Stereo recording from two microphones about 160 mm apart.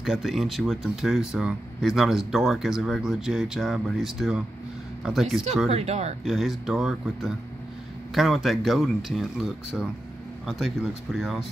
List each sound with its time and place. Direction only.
0.0 s speech: centre (ahead or behind)
5.7 s speech: 40° right (ahead or behind)
6.2 s speech: centre (ahead or behind)